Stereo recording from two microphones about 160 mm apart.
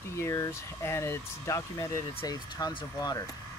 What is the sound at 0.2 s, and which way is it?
Speech, 20° left (ahead or behind).